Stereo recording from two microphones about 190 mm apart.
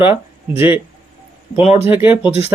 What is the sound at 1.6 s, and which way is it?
Speech, 35° left (ahead or behind).